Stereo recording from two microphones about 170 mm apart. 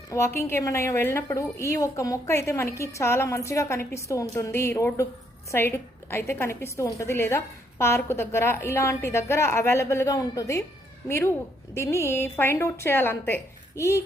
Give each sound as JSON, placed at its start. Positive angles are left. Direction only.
{"t": 0.1, "sound": "a woman's voice", "side_deg": 15}
{"t": 11.7, "sound": "a woman's voice", "side_deg": 15}